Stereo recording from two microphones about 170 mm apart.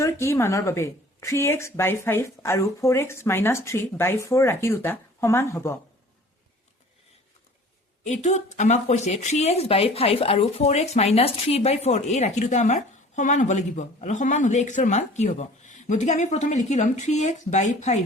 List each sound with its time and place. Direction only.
0.0 s speech: 15° left (ahead or behind)
8.0 s speech: 40° left (ahead or behind)